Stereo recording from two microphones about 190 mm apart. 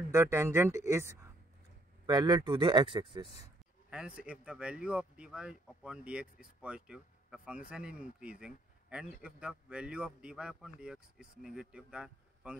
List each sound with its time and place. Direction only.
0.1 s speech: 15° right (ahead or behind)
2.0 s speech: 20° right (ahead or behind)
3.9 s speech: 5° right (ahead or behind)